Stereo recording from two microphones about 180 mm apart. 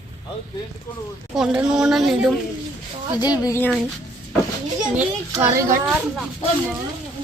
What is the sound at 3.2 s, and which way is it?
Speech, 20° left (ahead or behind).